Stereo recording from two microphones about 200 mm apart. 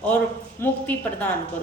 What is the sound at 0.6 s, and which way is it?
Speech, 10° left (ahead or behind).